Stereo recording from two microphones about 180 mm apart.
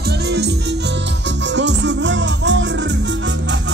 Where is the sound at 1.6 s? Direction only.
75° right (ahead or behind).